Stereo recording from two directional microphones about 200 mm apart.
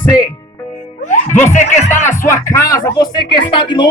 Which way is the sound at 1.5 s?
35° left (ahead or behind).